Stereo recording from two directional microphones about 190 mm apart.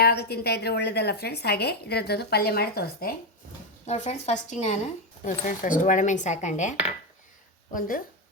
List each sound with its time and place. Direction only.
0.0 s a woman's voice: 55° left (ahead or behind)
3.8 s speech: 35° left (ahead or behind)